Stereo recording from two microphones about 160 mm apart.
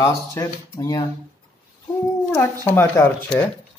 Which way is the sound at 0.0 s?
20° left (ahead or behind).